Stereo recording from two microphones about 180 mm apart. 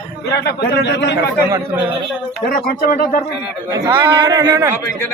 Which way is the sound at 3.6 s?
20° right (ahead or behind).